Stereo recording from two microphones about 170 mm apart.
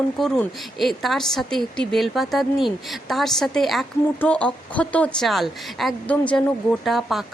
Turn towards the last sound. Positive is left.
turn(degrees=0)  # may be behind; listen again after turning